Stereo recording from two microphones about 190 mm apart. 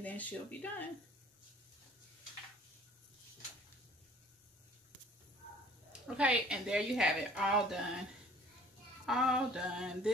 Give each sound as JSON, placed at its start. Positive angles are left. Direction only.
{"t": 0.0, "sound": "speech", "side_deg": 10}
{"t": 6.0, "sound": "a woman's voice", "side_deg": -5}
{"t": 9.0, "sound": "a woman's voice", "side_deg": 0}